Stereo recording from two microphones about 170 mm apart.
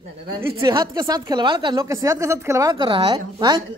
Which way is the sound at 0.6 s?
25° right (ahead or behind).